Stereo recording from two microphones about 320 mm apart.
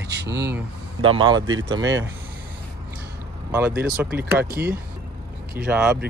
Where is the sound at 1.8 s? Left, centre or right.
Right.